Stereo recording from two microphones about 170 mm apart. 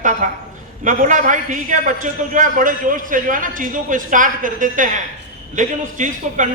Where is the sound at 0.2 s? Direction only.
45° right (ahead or behind).